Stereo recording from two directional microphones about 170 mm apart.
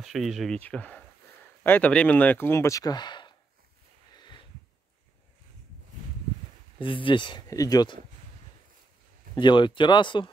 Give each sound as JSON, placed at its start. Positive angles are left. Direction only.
{"t": 0.0, "sound": "speech", "side_deg": 0}
{"t": 6.8, "sound": "speech", "side_deg": 30}
{"t": 9.3, "sound": "speech", "side_deg": 30}